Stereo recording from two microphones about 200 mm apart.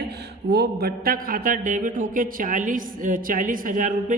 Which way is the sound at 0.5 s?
55° right (ahead or behind).